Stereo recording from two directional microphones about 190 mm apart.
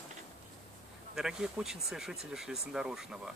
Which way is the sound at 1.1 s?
5° right (ahead or behind).